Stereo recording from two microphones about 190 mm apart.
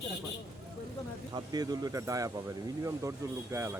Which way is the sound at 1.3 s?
20° right (ahead or behind).